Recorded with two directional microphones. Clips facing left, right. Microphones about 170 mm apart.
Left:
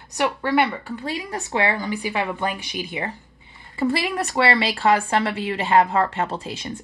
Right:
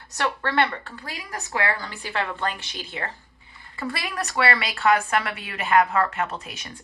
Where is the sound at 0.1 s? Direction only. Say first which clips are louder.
Left 4 dB; 15° left (ahead or behind).